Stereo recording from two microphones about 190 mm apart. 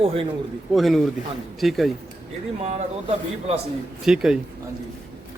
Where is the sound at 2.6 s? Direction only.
35° right (ahead or behind).